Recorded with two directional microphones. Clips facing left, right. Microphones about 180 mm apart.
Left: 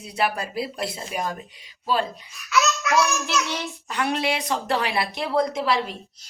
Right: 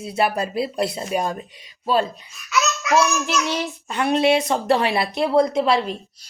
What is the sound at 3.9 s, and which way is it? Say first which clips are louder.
Speech: right 7 dB; 25° right (ahead or behind).